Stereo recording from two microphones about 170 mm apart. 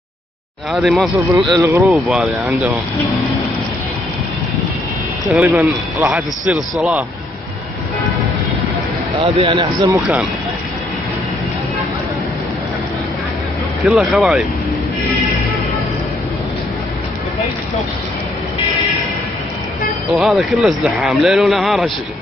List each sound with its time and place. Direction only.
0.7 s speech: centre (ahead or behind)
1.4 s speech: 20° right (ahead or behind)
1.9 s speech: centre (ahead or behind)
5.5 s a man's voice: 15° right (ahead or behind)
9.2 s speech: 30° right (ahead or behind)
9.8 s a man's voice: 15° right (ahead or behind)
13.8 s speech: centre (ahead or behind)
20.2 s speech: centre (ahead or behind)